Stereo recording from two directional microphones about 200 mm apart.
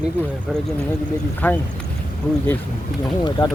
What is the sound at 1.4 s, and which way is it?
Speech, 10° left (ahead or behind).